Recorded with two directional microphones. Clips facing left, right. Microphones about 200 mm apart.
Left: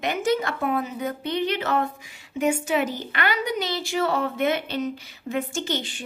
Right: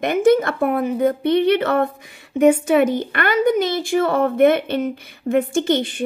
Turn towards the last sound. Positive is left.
turn(degrees=-55)  # may be behind; listen again after turning